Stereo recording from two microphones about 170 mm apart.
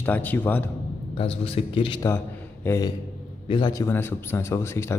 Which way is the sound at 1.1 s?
35° left (ahead or behind).